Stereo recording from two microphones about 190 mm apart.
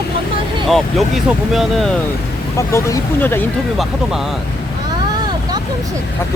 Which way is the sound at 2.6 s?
15° left (ahead or behind).